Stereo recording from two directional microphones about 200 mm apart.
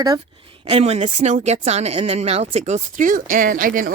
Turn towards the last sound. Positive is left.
turn(degrees=-40)  # may be behind; listen again after turning